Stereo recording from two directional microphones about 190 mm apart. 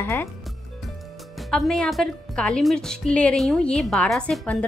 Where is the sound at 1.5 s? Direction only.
Centre (ahead or behind).